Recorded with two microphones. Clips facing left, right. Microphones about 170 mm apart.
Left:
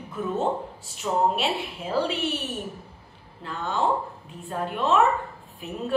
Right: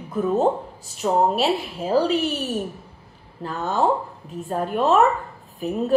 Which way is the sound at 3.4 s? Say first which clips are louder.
Right 4 dB; 40° right (ahead or behind).